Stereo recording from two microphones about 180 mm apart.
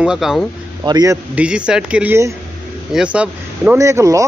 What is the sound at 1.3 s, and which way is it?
Speech, 5° right (ahead or behind).